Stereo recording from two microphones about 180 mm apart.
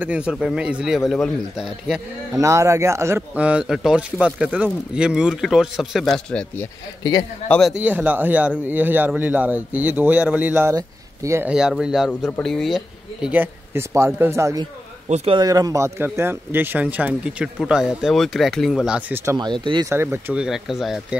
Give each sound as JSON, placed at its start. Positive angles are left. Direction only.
{"t": 0.0, "sound": "a man's voice", "side_deg": -5}
{"t": 2.3, "sound": "a man's voice", "side_deg": -15}
{"t": 7.0, "sound": "a man's voice", "side_deg": 20}
{"t": 7.4, "sound": "a man's voice", "side_deg": 5}
{"t": 7.7, "sound": "speech", "side_deg": -10}
{"t": 11.5, "sound": "a man's voice", "side_deg": -5}
{"t": 12.1, "sound": "speech", "side_deg": 10}
{"t": 15.0, "sound": "speech", "side_deg": -40}
{"t": 15.3, "sound": "speech", "side_deg": -20}
{"t": 19.3, "sound": "speech", "side_deg": -25}
{"t": 19.9, "sound": "a man's voice", "side_deg": -15}